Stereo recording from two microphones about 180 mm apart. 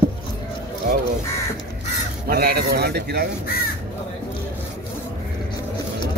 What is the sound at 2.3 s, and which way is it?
Speech, 60° right (ahead or behind).